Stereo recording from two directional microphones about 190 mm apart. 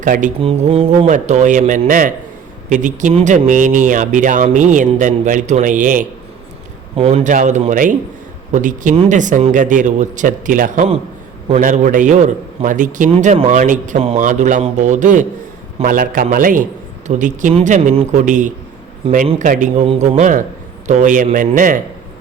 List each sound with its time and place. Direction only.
0.0 s speech: 45° right (ahead or behind)
0.3 s mantra: 30° right (ahead or behind)
1.1 s a man's voice: 40° right (ahead or behind)
6.9 s a man's voice: 30° right (ahead or behind)